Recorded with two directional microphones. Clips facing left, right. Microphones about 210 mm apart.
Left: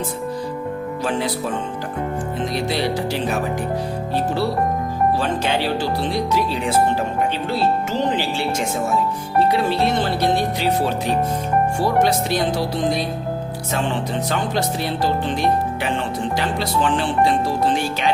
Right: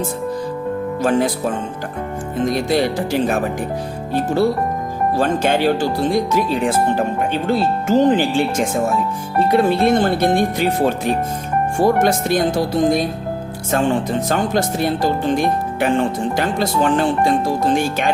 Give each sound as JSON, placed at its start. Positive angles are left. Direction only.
{"t": 2.5, "sound": "speech", "side_deg": -50}
{"t": 5.1, "sound": "speech", "side_deg": -50}
{"t": 9.5, "sound": "speech", "side_deg": -50}